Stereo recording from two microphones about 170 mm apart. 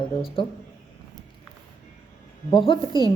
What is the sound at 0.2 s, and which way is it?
Speech, 30° left (ahead or behind).